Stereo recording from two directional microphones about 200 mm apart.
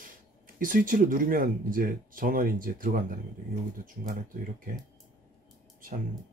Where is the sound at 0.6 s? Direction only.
40° right (ahead or behind).